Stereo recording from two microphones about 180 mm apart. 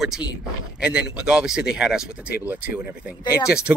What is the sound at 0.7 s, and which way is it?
Speech, 5° right (ahead or behind).